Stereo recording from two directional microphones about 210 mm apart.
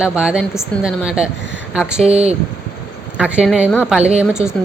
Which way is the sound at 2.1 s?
30° right (ahead or behind).